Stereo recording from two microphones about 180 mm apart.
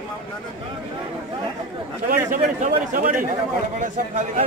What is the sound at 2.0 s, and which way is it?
A man's voice, 50° right (ahead or behind).